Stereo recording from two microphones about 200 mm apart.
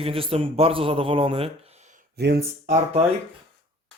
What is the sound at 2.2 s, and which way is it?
Speech, 55° right (ahead or behind).